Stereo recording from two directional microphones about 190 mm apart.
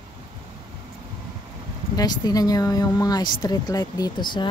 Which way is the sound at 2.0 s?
20° left (ahead or behind).